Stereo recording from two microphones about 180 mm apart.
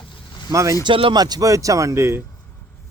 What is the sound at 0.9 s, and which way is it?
Speech, 30° right (ahead or behind).